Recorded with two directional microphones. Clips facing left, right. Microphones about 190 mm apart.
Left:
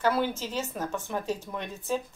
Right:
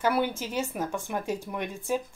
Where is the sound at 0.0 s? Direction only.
15° right (ahead or behind).